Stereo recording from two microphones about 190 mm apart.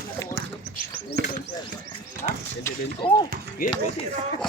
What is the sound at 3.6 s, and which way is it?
Speech, 50° left (ahead or behind).